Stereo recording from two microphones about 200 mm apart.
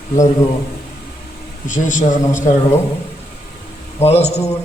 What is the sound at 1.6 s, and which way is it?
Speech, 40° left (ahead or behind).